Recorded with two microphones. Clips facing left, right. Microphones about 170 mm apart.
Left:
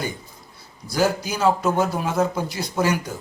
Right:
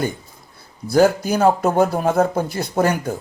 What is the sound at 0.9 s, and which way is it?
Speech, 55° right (ahead or behind).